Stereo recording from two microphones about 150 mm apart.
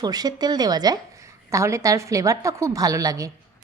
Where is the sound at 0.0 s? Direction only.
25° right (ahead or behind).